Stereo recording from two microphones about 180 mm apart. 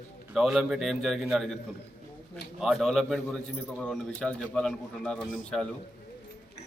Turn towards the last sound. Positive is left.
turn(degrees=5)  # may be behind; listen again after turning